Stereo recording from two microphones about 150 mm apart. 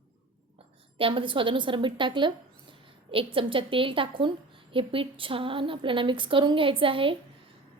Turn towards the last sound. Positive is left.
turn(degrees=-35)  # may be behind; listen again after turning